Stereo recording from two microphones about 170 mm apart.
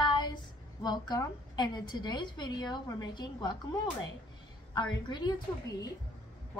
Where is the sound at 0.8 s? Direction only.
25° left (ahead or behind).